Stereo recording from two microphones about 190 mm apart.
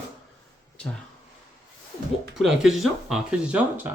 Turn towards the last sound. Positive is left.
turn(degrees=-10)  # may be behind; listen again after turning